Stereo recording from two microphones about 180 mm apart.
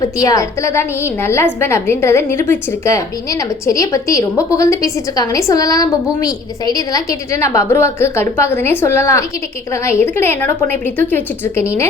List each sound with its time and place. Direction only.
0.2 s a woman's voice: 15° left (ahead or behind)
3.7 s a woman's voice: 15° left (ahead or behind)